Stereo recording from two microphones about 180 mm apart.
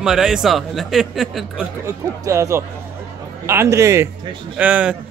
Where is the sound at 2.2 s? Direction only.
15° right (ahead or behind).